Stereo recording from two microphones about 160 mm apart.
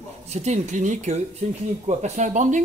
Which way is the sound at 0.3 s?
45° right (ahead or behind).